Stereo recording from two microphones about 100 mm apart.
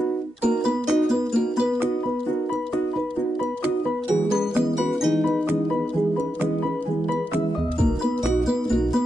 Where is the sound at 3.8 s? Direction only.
5° right (ahead or behind).